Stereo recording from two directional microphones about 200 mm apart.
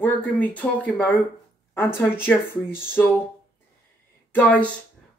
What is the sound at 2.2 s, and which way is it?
Speech, 10° left (ahead or behind).